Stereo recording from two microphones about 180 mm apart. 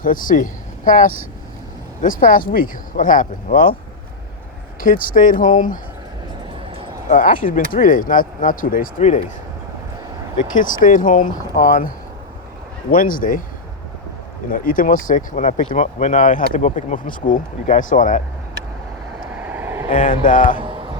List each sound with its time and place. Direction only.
0.0 s speech: 50° left (ahead or behind)
4.8 s speech: 50° left (ahead or behind)
7.1 s speech: 50° left (ahead or behind)
10.3 s speech: 45° left (ahead or behind)
14.5 s speech: 50° left (ahead or behind)
19.4 s vehicle: 10° right (ahead or behind)
19.9 s speech: 45° left (ahead or behind)